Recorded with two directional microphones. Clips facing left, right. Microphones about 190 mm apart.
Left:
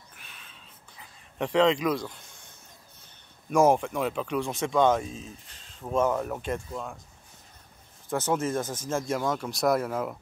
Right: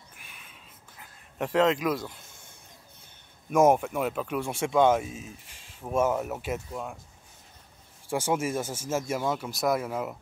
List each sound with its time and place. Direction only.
0.1 s a sound: 10° right (ahead or behind)
3.4 s speech: 5° right (ahead or behind)
8.1 s speech: 10° right (ahead or behind)